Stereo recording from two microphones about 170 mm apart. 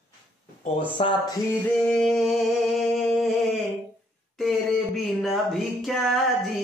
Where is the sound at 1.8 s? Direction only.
5° left (ahead or behind).